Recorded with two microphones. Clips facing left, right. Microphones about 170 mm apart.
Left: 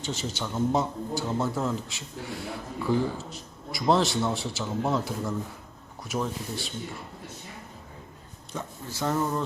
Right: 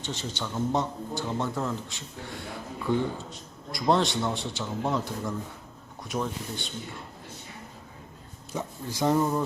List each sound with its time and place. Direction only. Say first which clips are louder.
0.0 s a man's voice: left 2 dB; 5° left (ahead or behind)
8.5 s speech: right 3 dB; 15° right (ahead or behind)